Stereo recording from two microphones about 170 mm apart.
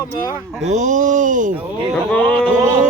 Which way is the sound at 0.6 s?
45° right (ahead or behind).